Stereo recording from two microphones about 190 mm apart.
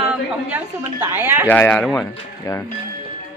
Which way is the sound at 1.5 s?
10° left (ahead or behind).